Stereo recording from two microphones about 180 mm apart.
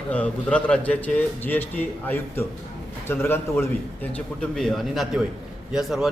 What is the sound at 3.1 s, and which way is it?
A man's voice, 15° left (ahead or behind).